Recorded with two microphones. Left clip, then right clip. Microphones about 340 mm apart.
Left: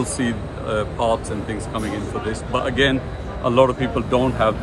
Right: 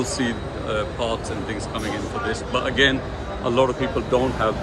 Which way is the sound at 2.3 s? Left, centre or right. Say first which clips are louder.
Left 1 dB; centre.